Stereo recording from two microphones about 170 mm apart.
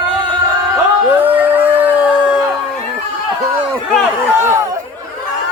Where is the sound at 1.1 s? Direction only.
10° right (ahead or behind).